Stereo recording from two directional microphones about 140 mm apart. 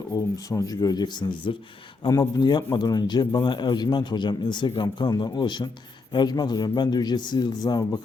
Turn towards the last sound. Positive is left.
turn(degrees=25)  # may be behind; listen again after turning